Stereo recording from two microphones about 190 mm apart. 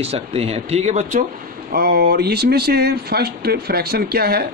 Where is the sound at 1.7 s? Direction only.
50° right (ahead or behind).